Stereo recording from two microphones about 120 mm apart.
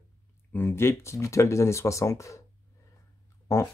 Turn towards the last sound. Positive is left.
turn(degrees=25)  # may be behind; listen again after turning